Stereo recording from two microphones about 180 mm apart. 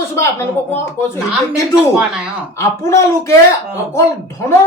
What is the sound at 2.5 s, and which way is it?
Speech, 15° left (ahead or behind).